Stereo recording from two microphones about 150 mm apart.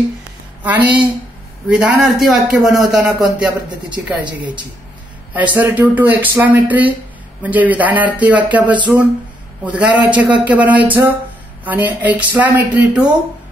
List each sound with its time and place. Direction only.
0.7 s a man's voice: 10° right (ahead or behind)
4.2 s speech: 30° right (ahead or behind)
5.3 s speech: 10° right (ahead or behind)
8.6 s speech: 30° right (ahead or behind)
9.7 s speech: 10° right (ahead or behind)